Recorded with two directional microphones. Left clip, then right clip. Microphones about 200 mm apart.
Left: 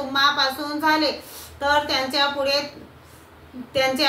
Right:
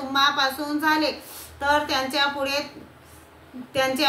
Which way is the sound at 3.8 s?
15° right (ahead or behind).